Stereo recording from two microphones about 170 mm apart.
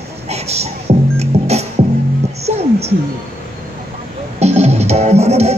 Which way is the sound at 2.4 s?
40° right (ahead or behind).